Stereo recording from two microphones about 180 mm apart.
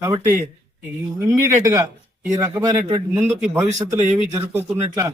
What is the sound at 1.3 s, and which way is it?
A man's voice, 15° right (ahead or behind).